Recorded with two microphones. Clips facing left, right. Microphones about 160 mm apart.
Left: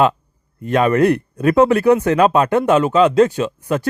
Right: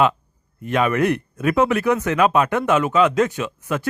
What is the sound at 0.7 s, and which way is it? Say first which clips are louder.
Speech: left 5 dB; 35° left (ahead or behind).